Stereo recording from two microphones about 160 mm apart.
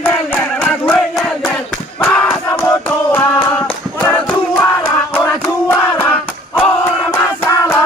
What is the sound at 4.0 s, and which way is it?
Music, 10° left (ahead or behind).